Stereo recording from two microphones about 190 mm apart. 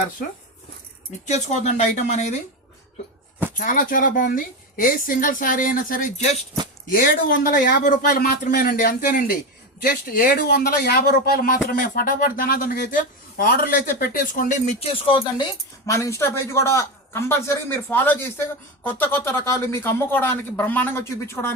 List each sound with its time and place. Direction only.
1.2 s speech: 40° left (ahead or behind)
3.6 s speech: 45° left (ahead or behind)
14.8 s speech: 30° left (ahead or behind)
15.9 s a man's voice: 15° left (ahead or behind)